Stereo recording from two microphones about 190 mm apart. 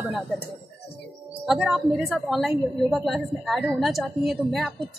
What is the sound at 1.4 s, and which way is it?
A woman's voice, 5° right (ahead or behind).